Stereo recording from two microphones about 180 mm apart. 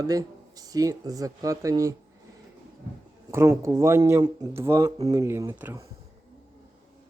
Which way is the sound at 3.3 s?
15° right (ahead or behind).